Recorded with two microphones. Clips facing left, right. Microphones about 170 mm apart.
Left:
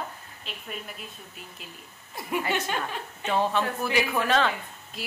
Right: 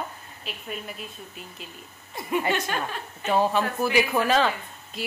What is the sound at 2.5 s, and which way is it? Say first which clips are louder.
Speech: right 2 dB; 15° left (ahead or behind).